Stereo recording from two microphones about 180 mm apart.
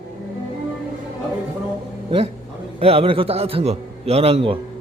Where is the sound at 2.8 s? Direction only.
30° right (ahead or behind).